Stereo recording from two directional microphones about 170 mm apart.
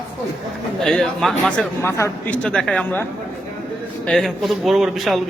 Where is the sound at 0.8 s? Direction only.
5° left (ahead or behind).